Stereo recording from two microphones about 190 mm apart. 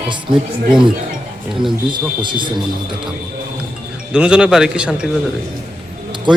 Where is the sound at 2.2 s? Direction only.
25° right (ahead or behind).